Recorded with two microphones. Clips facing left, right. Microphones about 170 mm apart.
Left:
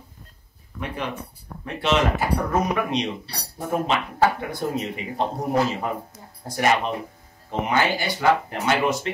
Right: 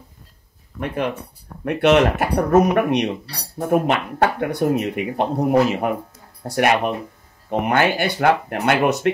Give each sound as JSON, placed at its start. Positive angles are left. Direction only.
{"t": 0.7, "sound": "speech", "side_deg": -55}